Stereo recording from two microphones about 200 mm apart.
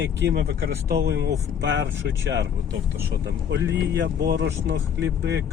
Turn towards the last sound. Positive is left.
turn(degrees=-60)  # may be behind; listen again after turning